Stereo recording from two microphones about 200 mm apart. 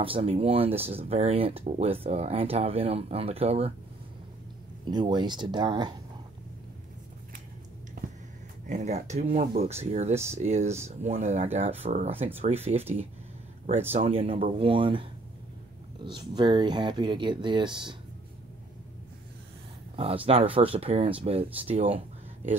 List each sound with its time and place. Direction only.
0.0 s speech: 30° right (ahead or behind)
4.8 s speech: 20° right (ahead or behind)
8.6 s speech: 35° right (ahead or behind)
16.1 s speech: 20° right (ahead or behind)
20.2 s speech: 25° right (ahead or behind)